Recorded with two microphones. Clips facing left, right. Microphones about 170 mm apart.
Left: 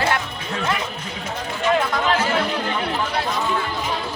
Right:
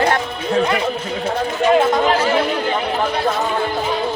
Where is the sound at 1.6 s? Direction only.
25° right (ahead or behind).